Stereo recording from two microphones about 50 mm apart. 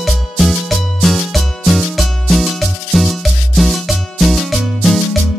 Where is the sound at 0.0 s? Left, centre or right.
Centre.